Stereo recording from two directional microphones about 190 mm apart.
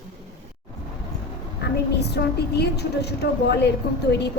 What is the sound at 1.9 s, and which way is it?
A woman's voice, 60° left (ahead or behind).